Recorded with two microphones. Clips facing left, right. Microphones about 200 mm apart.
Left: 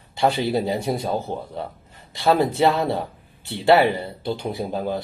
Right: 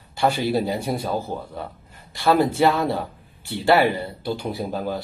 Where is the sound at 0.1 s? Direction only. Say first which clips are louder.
Even; 20° left (ahead or behind).